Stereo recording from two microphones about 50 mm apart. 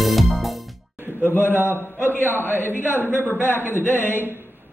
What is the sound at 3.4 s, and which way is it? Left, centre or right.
Speech, left.